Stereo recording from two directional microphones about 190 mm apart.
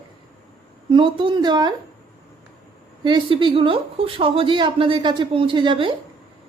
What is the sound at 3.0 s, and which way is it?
A woman's voice, 25° right (ahead or behind).